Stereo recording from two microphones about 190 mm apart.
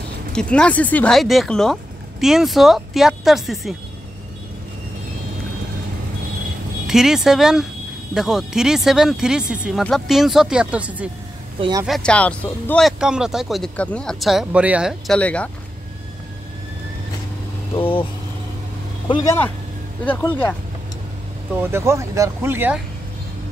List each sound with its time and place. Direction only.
0.3 s speech: 5° left (ahead or behind)
6.9 s speech: centre (ahead or behind)
17.7 s speech: 30° left (ahead or behind)
19.0 s speech: 25° left (ahead or behind)
20.1 s speech: 10° left (ahead or behind)
21.5 s speech: 15° right (ahead or behind)